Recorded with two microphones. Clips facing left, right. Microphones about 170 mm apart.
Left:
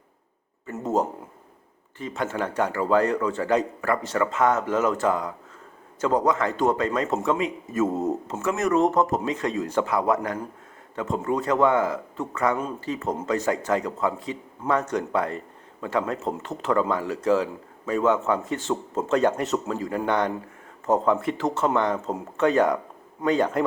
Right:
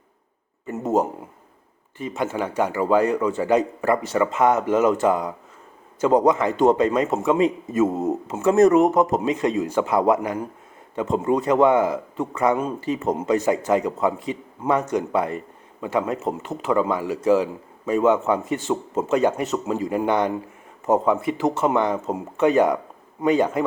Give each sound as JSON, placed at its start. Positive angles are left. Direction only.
{"t": 0.6, "sound": "a sound", "side_deg": -15}
{"t": 2.0, "sound": "a man's voice", "side_deg": -10}
{"t": 19.6, "sound": "a man's voice", "side_deg": -15}